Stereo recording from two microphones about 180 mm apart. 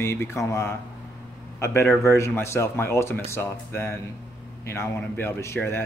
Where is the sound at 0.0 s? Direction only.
15° left (ahead or behind).